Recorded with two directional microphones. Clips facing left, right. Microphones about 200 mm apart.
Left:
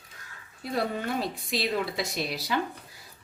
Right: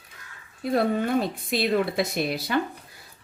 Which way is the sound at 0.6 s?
55° right (ahead or behind).